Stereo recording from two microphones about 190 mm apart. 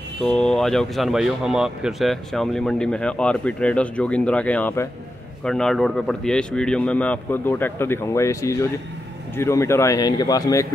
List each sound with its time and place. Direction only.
0.2 s a man's voice: 5° left (ahead or behind)